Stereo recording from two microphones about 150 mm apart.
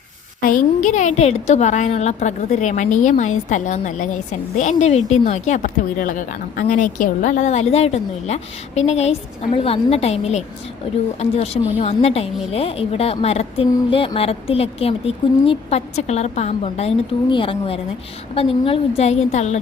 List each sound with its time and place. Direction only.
0.4 s a woman's voice: 60° left (ahead or behind); by 16.9 s 45° left (ahead or behind)
17.2 s a woman's voice: 35° left (ahead or behind)